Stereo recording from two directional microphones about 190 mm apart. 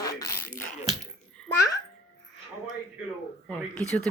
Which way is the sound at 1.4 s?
5° left (ahead or behind).